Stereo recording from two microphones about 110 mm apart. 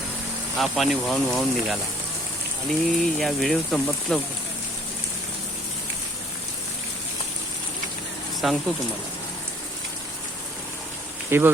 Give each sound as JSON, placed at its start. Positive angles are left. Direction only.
{"t": 0.6, "sound": "speech", "side_deg": 0}
{"t": 8.4, "sound": "speech", "side_deg": 0}
{"t": 11.3, "sound": "speech", "side_deg": -20}